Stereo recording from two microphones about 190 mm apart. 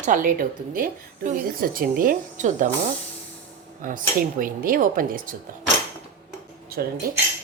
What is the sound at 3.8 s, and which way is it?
A woman's voice, 45° right (ahead or behind).